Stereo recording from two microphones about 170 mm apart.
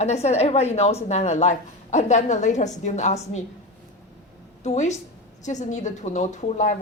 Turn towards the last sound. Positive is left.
turn(degrees=45)  # may be behind; listen again after turning